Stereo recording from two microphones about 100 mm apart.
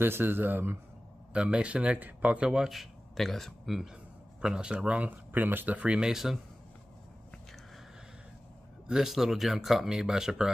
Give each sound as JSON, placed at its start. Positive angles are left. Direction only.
{"t": 0.0, "sound": "speech", "side_deg": -20}
{"t": 8.8, "sound": "speech", "side_deg": -5}